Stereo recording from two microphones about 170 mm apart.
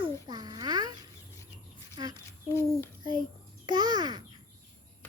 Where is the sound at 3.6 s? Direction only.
25° right (ahead or behind).